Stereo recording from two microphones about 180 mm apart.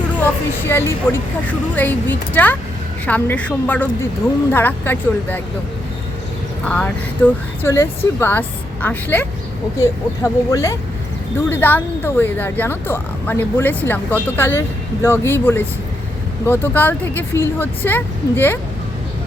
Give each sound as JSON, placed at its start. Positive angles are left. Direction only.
{"t": 0.2, "sound": "speech", "side_deg": 10}
{"t": 6.7, "sound": "speech", "side_deg": 10}
{"t": 10.5, "sound": "speech", "side_deg": 15}